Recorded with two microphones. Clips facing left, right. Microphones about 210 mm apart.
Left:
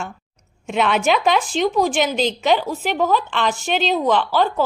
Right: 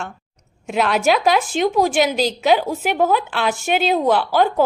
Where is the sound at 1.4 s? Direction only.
45° right (ahead or behind).